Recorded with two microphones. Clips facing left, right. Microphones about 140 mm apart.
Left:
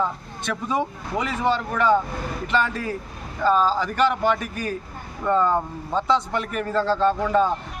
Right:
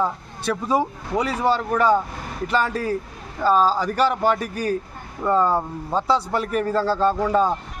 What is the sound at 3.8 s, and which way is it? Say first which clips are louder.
Speech: right 1 dB; 40° right (ahead or behind).